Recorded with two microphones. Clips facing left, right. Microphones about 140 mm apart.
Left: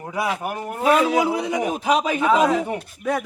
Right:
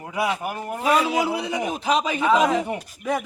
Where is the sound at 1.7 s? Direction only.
10° left (ahead or behind).